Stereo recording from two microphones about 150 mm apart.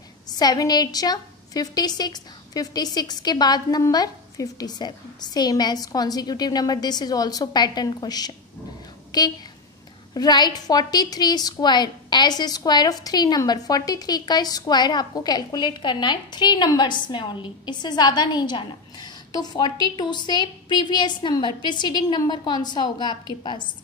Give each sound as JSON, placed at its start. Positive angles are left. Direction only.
{"t": 0.3, "sound": "a woman's voice", "side_deg": 25}